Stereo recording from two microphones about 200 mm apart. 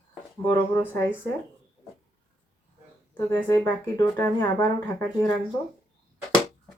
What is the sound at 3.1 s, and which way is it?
Speech, 10° left (ahead or behind).